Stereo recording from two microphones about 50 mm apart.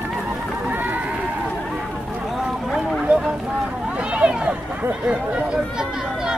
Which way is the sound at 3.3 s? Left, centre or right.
Right.